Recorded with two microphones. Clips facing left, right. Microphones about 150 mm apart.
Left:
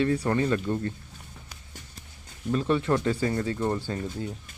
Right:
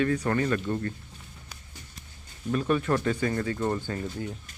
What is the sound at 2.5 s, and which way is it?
Speech, 25° left (ahead or behind).